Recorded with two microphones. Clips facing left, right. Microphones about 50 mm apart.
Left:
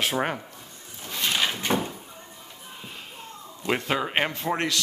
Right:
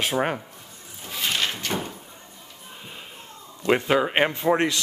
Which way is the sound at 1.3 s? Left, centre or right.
Centre.